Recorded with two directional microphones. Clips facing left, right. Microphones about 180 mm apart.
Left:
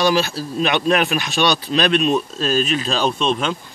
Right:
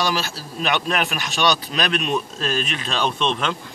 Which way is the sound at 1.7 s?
30° left (ahead or behind).